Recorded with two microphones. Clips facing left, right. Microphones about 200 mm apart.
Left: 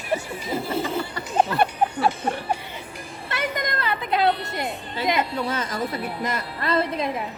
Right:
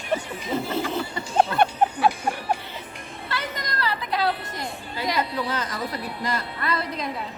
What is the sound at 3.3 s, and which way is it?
Music, 20° left (ahead or behind).